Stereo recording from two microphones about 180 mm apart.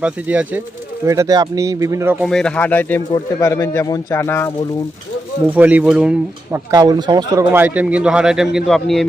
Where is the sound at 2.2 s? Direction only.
5° left (ahead or behind).